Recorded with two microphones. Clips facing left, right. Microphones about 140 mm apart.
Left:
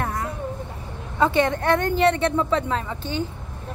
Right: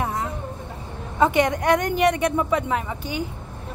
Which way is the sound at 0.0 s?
20° right (ahead or behind).